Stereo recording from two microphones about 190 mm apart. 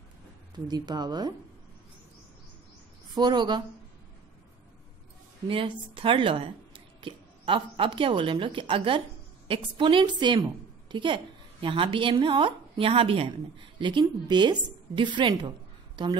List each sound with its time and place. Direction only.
0.7 s speech: 20° right (ahead or behind)
3.2 s speech: 20° right (ahead or behind)
5.5 s a woman's voice: 25° right (ahead or behind)